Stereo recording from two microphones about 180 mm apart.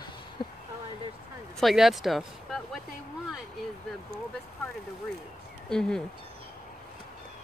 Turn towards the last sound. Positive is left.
turn(degrees=5)  # may be behind; listen again after turning